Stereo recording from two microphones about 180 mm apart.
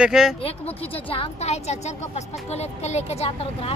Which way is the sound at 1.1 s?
35° left (ahead or behind).